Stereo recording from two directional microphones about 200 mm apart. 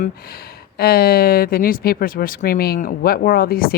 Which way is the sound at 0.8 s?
50° left (ahead or behind).